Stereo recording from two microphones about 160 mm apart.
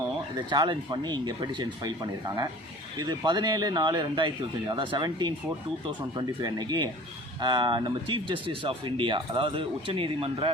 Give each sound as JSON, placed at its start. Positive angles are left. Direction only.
{"t": 0.5, "sound": "speech", "side_deg": -25}